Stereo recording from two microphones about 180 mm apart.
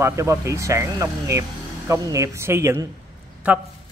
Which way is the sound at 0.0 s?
15° right (ahead or behind).